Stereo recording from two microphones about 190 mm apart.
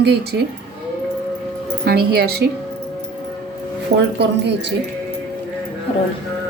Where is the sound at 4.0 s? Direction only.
65° right (ahead or behind).